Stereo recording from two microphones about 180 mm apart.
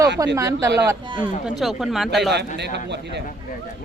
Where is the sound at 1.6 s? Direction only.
Centre (ahead or behind).